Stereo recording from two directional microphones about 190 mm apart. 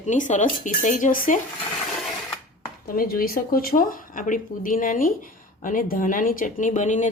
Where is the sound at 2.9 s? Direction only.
50° left (ahead or behind).